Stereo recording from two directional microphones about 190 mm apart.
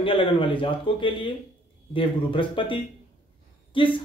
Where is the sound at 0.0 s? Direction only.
30° left (ahead or behind).